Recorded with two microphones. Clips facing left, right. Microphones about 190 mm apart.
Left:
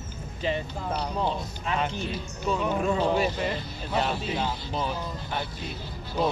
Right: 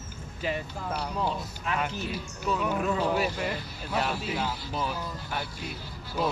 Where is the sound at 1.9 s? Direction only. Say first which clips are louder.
Left 2 dB; 5° right (ahead or behind).